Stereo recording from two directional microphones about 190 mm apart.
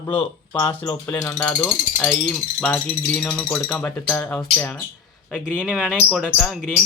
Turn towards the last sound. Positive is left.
turn(degrees=0)  # may be behind; listen again after turning